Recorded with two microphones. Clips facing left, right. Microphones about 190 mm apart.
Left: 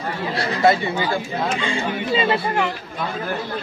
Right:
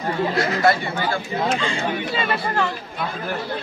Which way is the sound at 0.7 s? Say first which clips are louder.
Left 5 dB; 20° left (ahead or behind).